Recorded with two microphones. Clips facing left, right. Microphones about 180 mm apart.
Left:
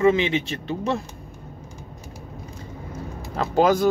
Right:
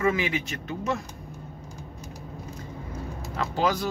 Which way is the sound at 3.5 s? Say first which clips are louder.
Left 8 dB; 50° left (ahead or behind).